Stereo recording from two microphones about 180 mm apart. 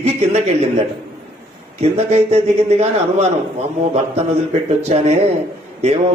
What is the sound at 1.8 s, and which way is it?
A man's voice, 35° right (ahead or behind).